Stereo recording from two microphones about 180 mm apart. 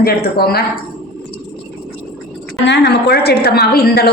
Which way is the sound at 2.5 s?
70° left (ahead or behind).